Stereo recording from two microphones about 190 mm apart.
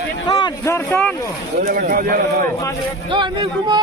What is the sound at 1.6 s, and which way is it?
Speech, 50° right (ahead or behind).